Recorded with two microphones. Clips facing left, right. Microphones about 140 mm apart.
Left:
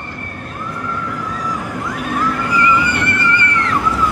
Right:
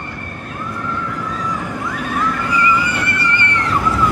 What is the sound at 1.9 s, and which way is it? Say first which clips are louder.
Vehicle: left 1 dB; 10° left (ahead or behind).